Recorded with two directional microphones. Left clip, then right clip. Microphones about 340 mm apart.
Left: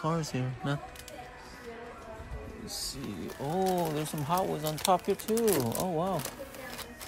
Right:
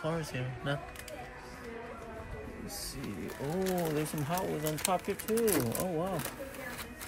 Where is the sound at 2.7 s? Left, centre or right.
Left.